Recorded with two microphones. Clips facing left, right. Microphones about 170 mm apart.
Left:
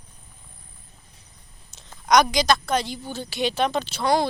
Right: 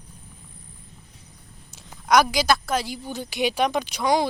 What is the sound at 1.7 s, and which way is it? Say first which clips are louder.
A woman's voice: even; 5° right (ahead or behind).